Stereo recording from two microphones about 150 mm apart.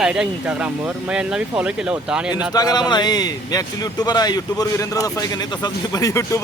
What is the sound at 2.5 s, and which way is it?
Speech, 25° left (ahead or behind).